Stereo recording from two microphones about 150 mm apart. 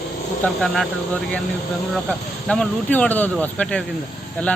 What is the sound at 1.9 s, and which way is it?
A man's voice, 5° left (ahead or behind).